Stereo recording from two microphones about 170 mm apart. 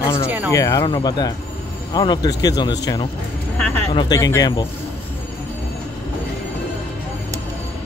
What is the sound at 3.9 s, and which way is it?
Speech, 25° left (ahead or behind).